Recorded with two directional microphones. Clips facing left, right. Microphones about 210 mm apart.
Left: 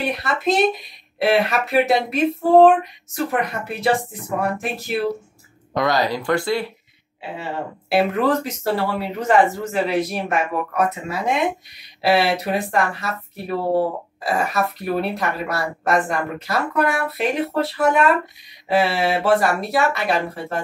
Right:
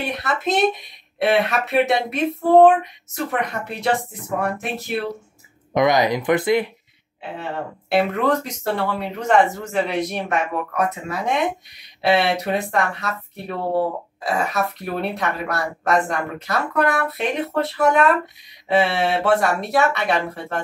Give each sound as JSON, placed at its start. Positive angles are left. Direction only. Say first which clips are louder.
{"t": 0.0, "sound": "speech", "louder": "left 2 dB", "side_deg": 0}
{"t": 5.7, "sound": "speech", "louder": "right 3 dB", "side_deg": -20}
{"t": 7.2, "sound": "speech", "louder": "even", "side_deg": 5}